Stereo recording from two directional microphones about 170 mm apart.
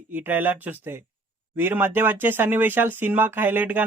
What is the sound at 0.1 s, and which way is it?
Speech, 10° right (ahead or behind).